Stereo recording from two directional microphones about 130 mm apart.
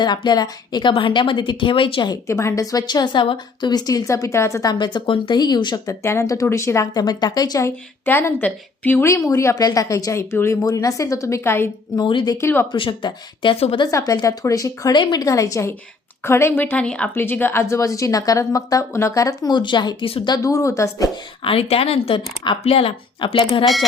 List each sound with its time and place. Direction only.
0.0 s a woman's voice: 35° left (ahead or behind)
2.2 s a woman's voice: 20° left (ahead or behind)
8.0 s a woman's voice: 15° left (ahead or behind)
11.9 s a woman's voice: 35° left (ahead or behind)
13.8 s a woman's voice: 25° left (ahead or behind)
20.3 s a woman's voice: 25° left (ahead or behind)
21.4 s speech: 50° left (ahead or behind)